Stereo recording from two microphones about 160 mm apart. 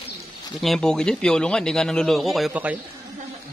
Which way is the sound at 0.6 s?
Centre (ahead or behind).